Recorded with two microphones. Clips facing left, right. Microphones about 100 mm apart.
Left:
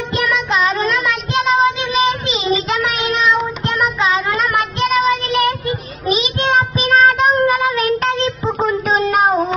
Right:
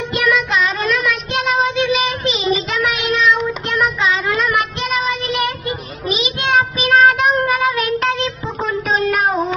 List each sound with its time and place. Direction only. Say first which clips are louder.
0.5 s child singing: left 2 dB; 40° left (ahead or behind)
1.0 s child singing: left 2 dB; 25° left (ahead or behind)
3.0 s child singing: even; 15° left (ahead or behind)
4.6 s child singing: left 3 dB; 30° left (ahead or behind)
8.5 s a sound: left 1 dB; 25° left (ahead or behind)